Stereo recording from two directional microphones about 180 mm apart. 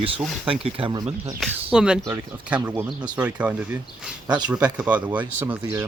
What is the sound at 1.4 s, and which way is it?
Speech, 5° right (ahead or behind).